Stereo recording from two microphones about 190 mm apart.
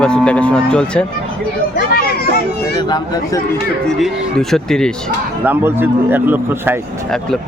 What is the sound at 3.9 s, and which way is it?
Cattle, centre (ahead or behind).